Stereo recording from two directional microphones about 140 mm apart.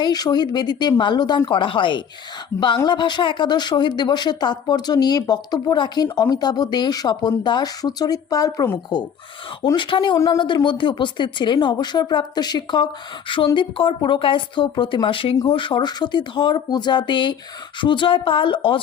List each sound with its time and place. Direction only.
0.0 s speech: 30° left (ahead or behind)
9.7 s speech: 35° left (ahead or behind)